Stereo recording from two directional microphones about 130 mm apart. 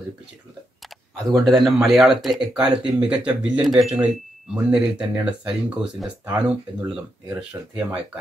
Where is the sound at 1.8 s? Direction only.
5° right (ahead or behind).